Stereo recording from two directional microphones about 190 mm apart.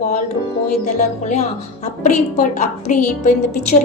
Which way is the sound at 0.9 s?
40° left (ahead or behind).